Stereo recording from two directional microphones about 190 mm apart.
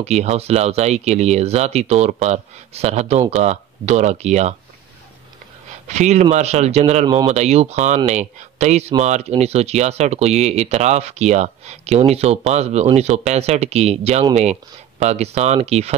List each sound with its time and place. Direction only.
0.0 s speech: 35° right (ahead or behind)
5.9 s speech: 35° right (ahead or behind)
7.1 s speech: 20° right (ahead or behind)
7.3 s speech: 35° right (ahead or behind)